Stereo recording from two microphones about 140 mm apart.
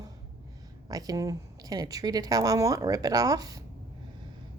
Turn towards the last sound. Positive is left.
turn(degrees=-25)  # may be behind; listen again after turning